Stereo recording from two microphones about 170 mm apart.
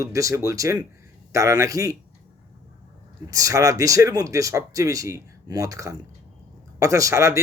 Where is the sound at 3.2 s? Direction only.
20° right (ahead or behind).